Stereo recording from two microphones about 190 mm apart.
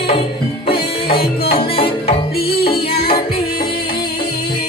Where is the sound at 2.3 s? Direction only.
55° left (ahead or behind).